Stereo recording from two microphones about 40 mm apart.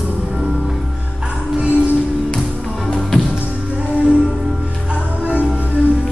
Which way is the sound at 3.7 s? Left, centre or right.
Right.